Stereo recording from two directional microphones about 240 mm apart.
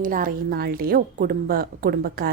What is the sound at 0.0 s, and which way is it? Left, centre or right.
A woman's voice, right.